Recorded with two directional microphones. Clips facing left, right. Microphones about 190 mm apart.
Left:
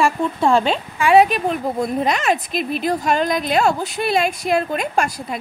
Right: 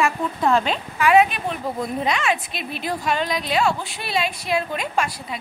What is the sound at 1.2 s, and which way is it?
A woman's voice, 40° left (ahead or behind).